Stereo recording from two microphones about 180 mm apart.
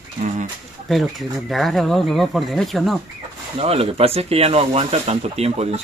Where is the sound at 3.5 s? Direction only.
35° right (ahead or behind).